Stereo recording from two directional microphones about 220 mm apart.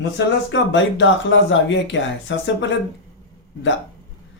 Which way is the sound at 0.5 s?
55° left (ahead or behind).